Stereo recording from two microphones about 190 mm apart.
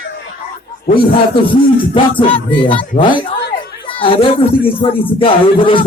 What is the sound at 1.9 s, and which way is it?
Speech, 25° left (ahead or behind).